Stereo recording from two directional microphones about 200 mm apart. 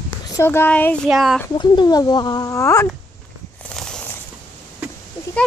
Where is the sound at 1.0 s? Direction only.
Centre (ahead or behind).